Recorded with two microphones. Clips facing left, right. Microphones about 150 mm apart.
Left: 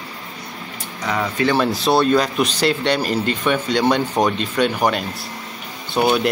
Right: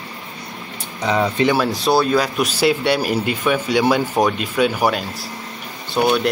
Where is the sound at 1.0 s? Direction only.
25° right (ahead or behind).